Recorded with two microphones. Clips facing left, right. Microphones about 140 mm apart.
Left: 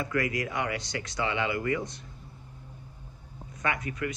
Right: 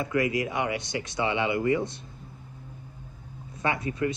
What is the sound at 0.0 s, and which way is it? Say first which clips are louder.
Speech: right 3 dB; 25° right (ahead or behind).